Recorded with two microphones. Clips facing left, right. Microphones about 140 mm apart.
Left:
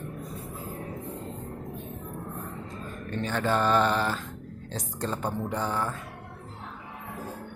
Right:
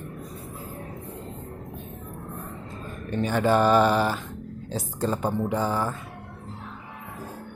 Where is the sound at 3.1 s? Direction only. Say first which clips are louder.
Right 5 dB; 10° right (ahead or behind).